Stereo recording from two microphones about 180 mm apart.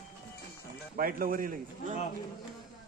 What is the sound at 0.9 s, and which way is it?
A man's voice, 50° right (ahead or behind).